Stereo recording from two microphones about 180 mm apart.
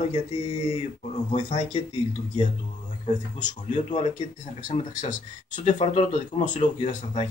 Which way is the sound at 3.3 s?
40° left (ahead or behind).